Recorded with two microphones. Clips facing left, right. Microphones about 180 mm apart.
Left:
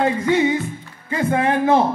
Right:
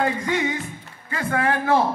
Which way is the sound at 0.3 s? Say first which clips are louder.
Left 7 dB; 25° left (ahead or behind).